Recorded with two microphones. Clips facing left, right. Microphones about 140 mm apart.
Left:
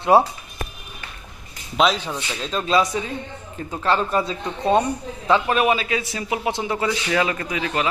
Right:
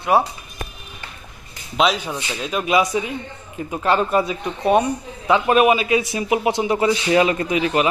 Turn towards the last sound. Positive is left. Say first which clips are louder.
# right 5 dB
turn(degrees=-20)  # may be behind; listen again after turning